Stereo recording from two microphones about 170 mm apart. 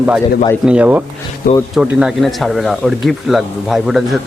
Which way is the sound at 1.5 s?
60° left (ahead or behind).